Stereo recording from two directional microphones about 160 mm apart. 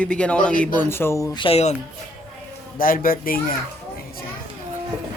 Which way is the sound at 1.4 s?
40° left (ahead or behind).